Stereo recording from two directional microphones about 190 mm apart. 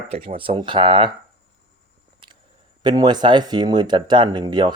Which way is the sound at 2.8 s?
20° right (ahead or behind).